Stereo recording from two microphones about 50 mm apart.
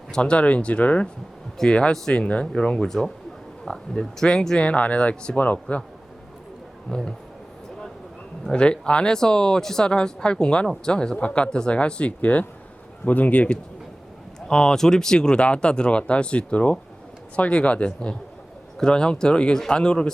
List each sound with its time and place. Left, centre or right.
0.1 s speech: left
6.9 s speech: centre
8.5 s speech: left
14.4 s speech: centre